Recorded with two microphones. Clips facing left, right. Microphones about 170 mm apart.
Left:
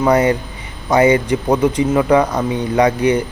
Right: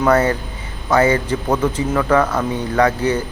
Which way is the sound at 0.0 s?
15° left (ahead or behind).